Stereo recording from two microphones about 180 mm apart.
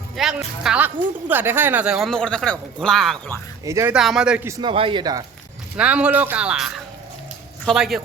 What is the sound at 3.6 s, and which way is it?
Speech, 15° right (ahead or behind).